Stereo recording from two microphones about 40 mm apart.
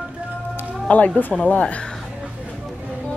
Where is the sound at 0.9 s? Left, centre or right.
Left.